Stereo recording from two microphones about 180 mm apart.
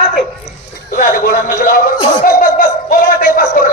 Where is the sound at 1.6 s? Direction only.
50° left (ahead or behind).